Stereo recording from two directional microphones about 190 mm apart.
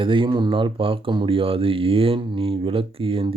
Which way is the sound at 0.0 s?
25° right (ahead or behind).